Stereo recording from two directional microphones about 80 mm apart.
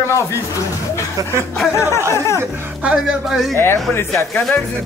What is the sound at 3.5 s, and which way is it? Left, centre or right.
Speech, left.